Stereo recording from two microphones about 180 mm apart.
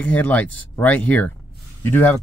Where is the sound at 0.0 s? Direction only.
10° left (ahead or behind).